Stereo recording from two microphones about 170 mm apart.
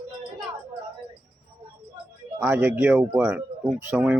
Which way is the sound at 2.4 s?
15° right (ahead or behind).